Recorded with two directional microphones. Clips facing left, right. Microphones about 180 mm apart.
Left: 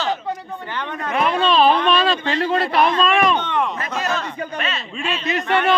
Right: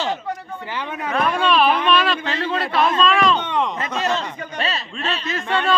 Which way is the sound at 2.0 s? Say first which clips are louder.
Left 2 dB; 30° left (ahead or behind).